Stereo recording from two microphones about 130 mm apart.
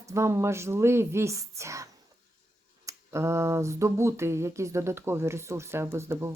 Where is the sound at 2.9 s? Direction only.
20° right (ahead or behind).